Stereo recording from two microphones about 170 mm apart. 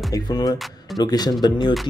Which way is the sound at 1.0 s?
25° left (ahead or behind).